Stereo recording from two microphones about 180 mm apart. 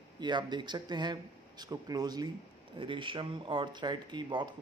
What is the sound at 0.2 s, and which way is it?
Speech, 25° right (ahead or behind).